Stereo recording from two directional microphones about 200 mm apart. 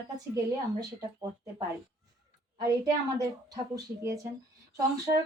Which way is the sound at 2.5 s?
15° right (ahead or behind).